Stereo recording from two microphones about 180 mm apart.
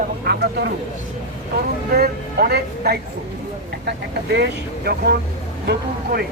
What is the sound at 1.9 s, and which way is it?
Speech, 60° right (ahead or behind).